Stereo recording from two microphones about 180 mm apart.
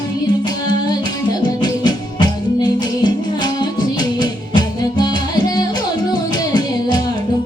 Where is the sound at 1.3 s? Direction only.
25° left (ahead or behind).